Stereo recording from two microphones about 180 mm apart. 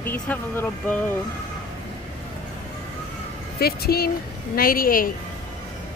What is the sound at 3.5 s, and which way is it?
A woman's voice, 60° left (ahead or behind).